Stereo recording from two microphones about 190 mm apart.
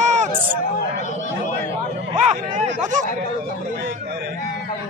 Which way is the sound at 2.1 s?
40° right (ahead or behind).